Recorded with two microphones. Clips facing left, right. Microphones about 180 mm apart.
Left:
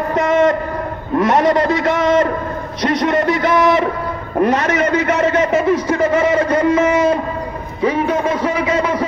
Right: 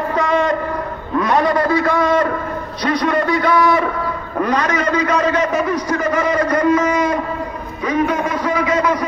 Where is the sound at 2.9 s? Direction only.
20° left (ahead or behind).